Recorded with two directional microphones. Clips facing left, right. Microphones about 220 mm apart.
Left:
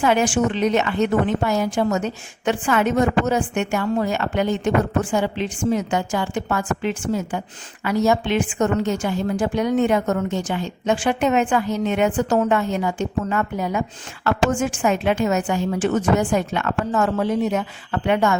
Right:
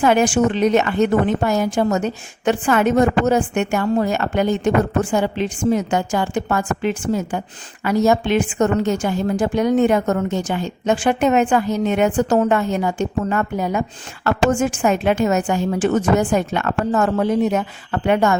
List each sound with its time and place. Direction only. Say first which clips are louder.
0.0 s a woman's voice: right 3 dB; 45° right (ahead or behind)